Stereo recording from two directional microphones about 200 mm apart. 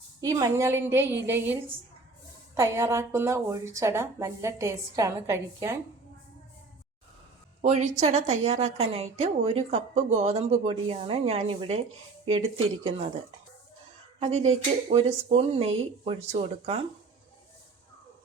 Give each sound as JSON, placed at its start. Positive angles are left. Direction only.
{"t": 0.2, "sound": "a woman's voice", "side_deg": -15}
{"t": 2.6, "sound": "a woman's voice", "side_deg": -15}
{"t": 7.6, "sound": "a woman's voice", "side_deg": -35}
{"t": 14.2, "sound": "a woman's voice", "side_deg": -35}